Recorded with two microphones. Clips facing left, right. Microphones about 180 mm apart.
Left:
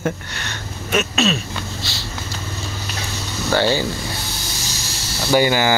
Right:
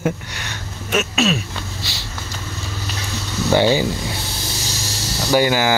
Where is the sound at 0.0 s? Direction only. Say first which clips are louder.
Right 1 dB; 10° right (ahead or behind).